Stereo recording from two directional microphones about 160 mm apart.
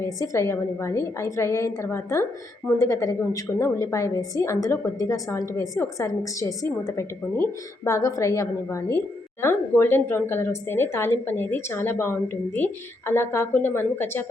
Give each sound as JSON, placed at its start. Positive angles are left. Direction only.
{"t": 0.0, "sound": "a woman's voice", "side_deg": 20}